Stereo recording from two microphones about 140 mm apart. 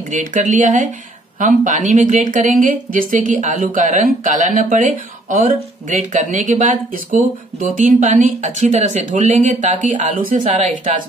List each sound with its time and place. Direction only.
0.1 s speech: 60° right (ahead or behind)